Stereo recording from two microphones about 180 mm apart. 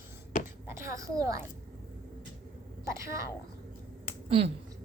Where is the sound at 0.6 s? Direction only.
15° right (ahead or behind).